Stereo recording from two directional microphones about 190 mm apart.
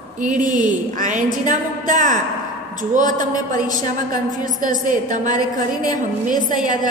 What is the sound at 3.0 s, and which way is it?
Speech, 20° left (ahead or behind).